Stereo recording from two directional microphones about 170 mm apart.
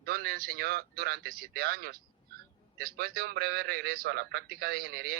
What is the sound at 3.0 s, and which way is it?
A man's voice, 65° right (ahead or behind).